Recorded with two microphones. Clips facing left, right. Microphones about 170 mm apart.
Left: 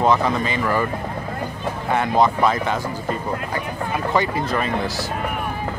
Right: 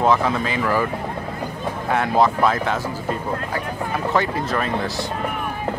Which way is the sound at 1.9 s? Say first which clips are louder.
Even; centre (ahead or behind).